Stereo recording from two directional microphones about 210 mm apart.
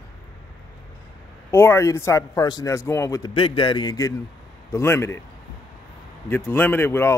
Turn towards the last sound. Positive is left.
turn(degrees=10)  # may be behind; listen again after turning